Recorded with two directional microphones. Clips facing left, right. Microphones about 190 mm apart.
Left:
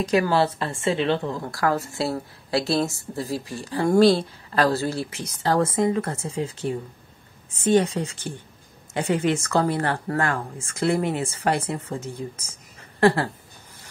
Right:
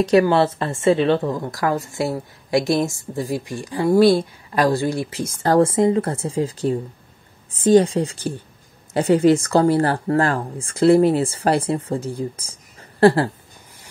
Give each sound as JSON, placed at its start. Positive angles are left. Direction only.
{"t": 0.1, "sound": "a woman's voice", "side_deg": -25}
{"t": 5.2, "sound": "speech", "side_deg": -50}
{"t": 5.6, "sound": "a woman's voice", "side_deg": -30}